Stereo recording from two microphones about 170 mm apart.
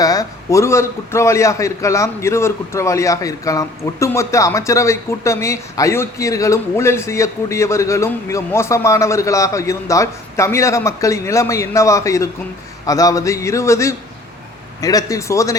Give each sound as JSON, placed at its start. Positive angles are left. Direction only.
{"t": 0.0, "sound": "a man's voice", "side_deg": 20}